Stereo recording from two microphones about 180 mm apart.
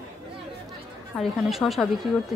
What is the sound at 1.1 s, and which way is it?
Speech, centre (ahead or behind).